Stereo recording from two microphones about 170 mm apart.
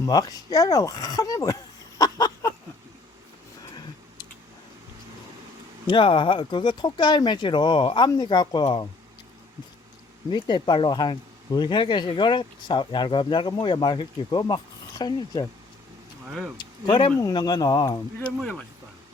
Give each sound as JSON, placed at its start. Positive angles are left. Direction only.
{"t": 0.0, "sound": "speech", "side_deg": 20}
{"t": 2.0, "sound": "a sound", "side_deg": 20}
{"t": 5.9, "sound": "speech", "side_deg": 30}
{"t": 10.2, "sound": "speech", "side_deg": 30}
{"t": 16.6, "sound": "speech", "side_deg": 25}
{"t": 18.3, "sound": "speech", "side_deg": 5}